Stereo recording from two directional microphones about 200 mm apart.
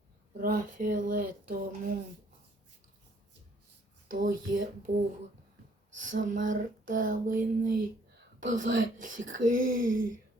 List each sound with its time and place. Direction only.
0.3 s speech: 45° right (ahead or behind)
4.1 s speech: 45° right (ahead or behind)
6.1 s speech: 40° right (ahead or behind)